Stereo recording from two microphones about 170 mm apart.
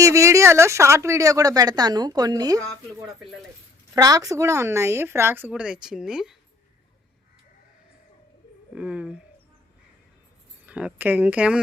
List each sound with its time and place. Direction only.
0.0 s speech: 15° right (ahead or behind)
3.9 s a woman's voice: 20° right (ahead or behind); by 6.3 s 5° right (ahead or behind)
8.7 s a woman's voice: 5° right (ahead or behind)
10.7 s a woman's voice: 5° right (ahead or behind)